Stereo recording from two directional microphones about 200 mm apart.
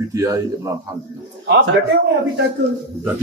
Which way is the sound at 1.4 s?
60° right (ahead or behind).